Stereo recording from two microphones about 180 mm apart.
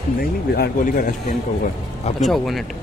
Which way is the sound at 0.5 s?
55° left (ahead or behind).